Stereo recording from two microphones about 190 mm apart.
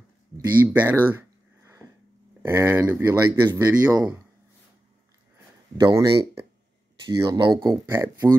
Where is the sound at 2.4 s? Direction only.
10° right (ahead or behind).